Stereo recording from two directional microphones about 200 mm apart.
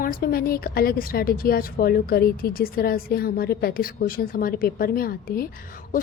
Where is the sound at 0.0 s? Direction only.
45° left (ahead or behind).